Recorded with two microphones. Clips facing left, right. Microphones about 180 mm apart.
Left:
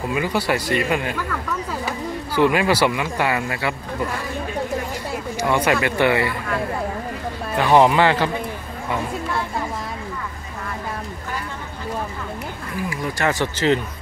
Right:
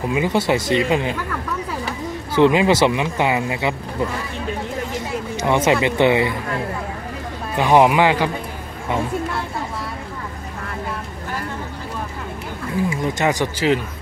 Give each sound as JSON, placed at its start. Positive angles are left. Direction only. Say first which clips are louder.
{"t": 0.1, "sound": "speech", "louder": "right 3 dB", "side_deg": -20}
{"t": 2.3, "sound": "speech", "louder": "right 3 dB", "side_deg": -20}
{"t": 5.4, "sound": "speech", "louder": "right 2 dB", "side_deg": -20}
{"t": 7.5, "sound": "speech", "louder": "right 1 dB", "side_deg": -15}
{"t": 12.9, "sound": "speech", "louder": "left 2 dB", "side_deg": -20}